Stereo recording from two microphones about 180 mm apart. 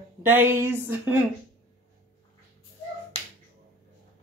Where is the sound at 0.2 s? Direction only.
10° right (ahead or behind).